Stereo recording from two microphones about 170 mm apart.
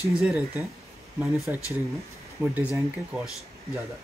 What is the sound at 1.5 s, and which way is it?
Speech, 10° right (ahead or behind).